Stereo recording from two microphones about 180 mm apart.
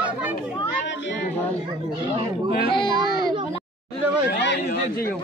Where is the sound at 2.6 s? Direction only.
25° left (ahead or behind).